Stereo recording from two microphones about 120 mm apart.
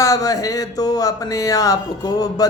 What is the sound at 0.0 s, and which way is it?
Speech, 30° left (ahead or behind).